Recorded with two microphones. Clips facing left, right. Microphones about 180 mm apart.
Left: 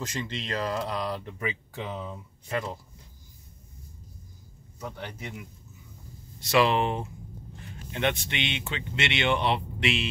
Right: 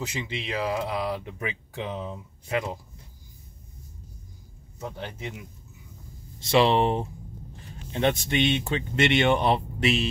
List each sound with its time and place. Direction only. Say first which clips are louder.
0.0 s speech: right 1 dB; 10° right (ahead or behind)
1.8 s speech: right 3 dB; 20° right (ahead or behind)
4.7 s speech: right 2 dB; 20° right (ahead or behind)
6.4 s speech: right 3 dB; 30° right (ahead or behind)